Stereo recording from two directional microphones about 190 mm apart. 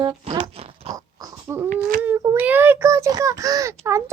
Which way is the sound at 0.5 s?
30° right (ahead or behind).